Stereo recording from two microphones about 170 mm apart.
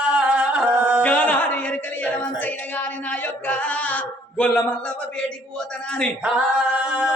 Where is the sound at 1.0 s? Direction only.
10° left (ahead or behind).